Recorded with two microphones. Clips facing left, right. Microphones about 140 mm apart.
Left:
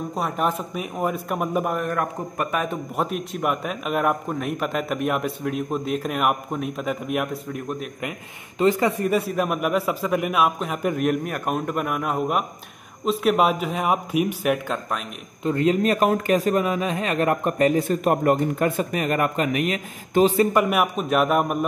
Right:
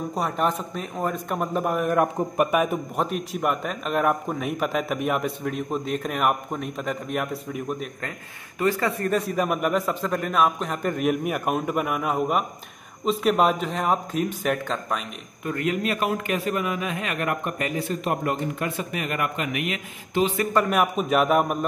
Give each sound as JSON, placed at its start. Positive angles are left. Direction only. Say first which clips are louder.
{"t": 0.1, "sound": "a man's voice", "louder": "even", "side_deg": 0}
{"t": 2.0, "sound": "a man's voice", "louder": "right 5 dB", "side_deg": -15}
{"t": 3.0, "sound": "a man's voice", "louder": "left 2 dB", "side_deg": 0}
{"t": 8.5, "sound": "a man's voice", "louder": "left 4 dB", "side_deg": 20}
{"t": 15.4, "sound": "a man's voice", "louder": "left 6 dB", "side_deg": 30}
{"t": 20.5, "sound": "a man's voice", "louder": "left 1 dB", "side_deg": 15}
{"t": 20.8, "sound": "a man's voice", "louder": "even", "side_deg": 0}